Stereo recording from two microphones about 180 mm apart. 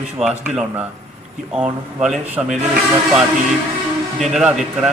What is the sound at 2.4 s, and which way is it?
Speech, 20° right (ahead or behind).